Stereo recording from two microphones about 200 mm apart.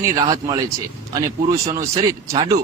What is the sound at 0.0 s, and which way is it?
Speech, 20° right (ahead or behind).